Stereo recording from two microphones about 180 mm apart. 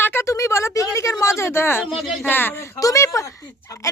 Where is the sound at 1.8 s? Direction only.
Centre (ahead or behind).